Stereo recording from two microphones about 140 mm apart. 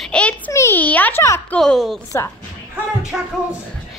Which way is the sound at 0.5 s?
15° left (ahead or behind).